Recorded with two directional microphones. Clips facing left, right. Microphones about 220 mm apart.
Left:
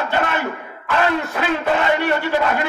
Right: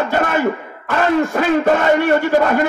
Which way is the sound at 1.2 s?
45° right (ahead or behind).